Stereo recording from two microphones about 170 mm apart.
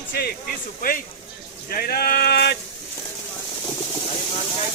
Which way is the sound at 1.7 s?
60° left (ahead or behind).